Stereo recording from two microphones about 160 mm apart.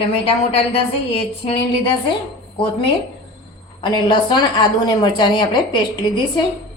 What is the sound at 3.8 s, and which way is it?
A woman's voice, 30° left (ahead or behind).